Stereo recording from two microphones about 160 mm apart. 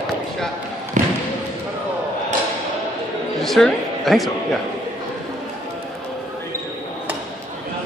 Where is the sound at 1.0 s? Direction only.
55° right (ahead or behind).